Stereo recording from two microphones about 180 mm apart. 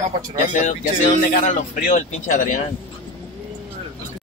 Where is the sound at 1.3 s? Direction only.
50° left (ahead or behind).